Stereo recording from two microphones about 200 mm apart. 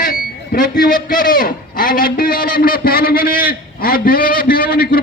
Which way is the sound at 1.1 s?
45° left (ahead or behind).